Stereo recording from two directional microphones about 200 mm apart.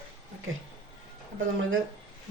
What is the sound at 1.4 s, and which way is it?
Speech, 75° right (ahead or behind).